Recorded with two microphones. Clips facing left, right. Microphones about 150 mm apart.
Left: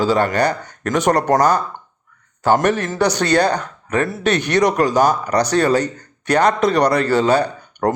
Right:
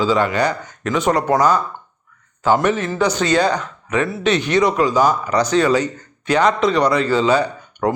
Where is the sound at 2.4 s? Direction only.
65° left (ahead or behind).